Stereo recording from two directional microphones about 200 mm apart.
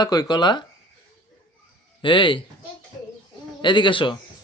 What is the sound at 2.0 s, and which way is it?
Speech, 25° left (ahead or behind).